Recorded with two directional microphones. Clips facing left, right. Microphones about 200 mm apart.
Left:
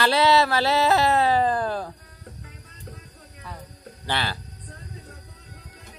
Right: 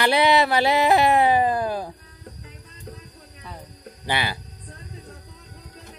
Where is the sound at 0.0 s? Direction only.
15° right (ahead or behind).